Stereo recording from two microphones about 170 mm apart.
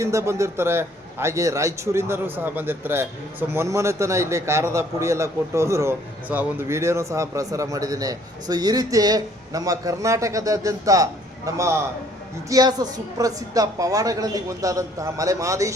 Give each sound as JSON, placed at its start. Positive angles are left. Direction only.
{"t": 0.0, "sound": "a man's voice", "side_deg": -15}